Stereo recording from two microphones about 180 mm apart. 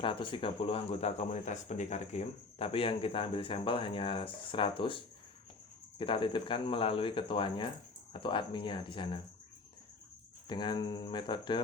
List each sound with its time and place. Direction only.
0.0 s speech: 30° left (ahead or behind)
10.5 s speech: 25° left (ahead or behind)